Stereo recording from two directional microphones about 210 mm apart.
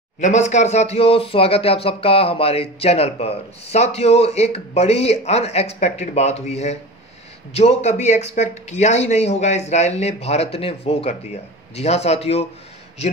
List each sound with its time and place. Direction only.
0.2 s speech: 35° left (ahead or behind)